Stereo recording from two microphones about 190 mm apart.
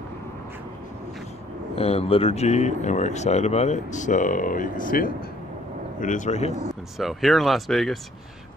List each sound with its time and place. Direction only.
1.8 s speech: 30° left (ahead or behind)
7.0 s speech: centre (ahead or behind)